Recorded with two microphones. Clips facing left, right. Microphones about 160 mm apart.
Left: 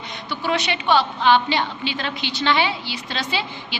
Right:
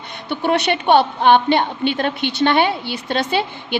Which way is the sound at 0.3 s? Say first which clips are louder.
Right 6 dB; 60° right (ahead or behind).